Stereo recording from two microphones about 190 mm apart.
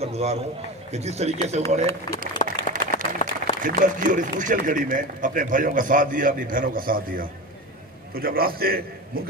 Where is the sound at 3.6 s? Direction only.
45° right (ahead or behind).